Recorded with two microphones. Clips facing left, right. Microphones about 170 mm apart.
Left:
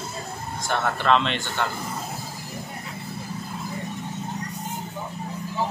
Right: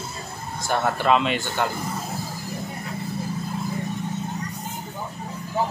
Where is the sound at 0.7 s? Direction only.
5° right (ahead or behind).